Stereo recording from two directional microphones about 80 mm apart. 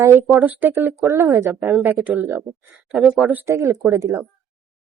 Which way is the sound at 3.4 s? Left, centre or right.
Right.